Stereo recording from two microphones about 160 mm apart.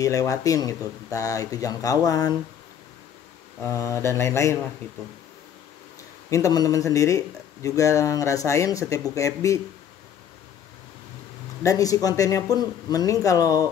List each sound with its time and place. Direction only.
0.0 s speech: 20° left (ahead or behind)
3.6 s speech: 15° left (ahead or behind)
6.3 s speech: 20° left (ahead or behind)
11.6 s speech: 20° left (ahead or behind)